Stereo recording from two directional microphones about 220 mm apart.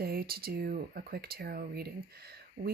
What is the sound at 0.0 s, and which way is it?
Speech, 45° right (ahead or behind).